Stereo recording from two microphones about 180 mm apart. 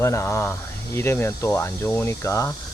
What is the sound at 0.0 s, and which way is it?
Speech, 15° left (ahead or behind).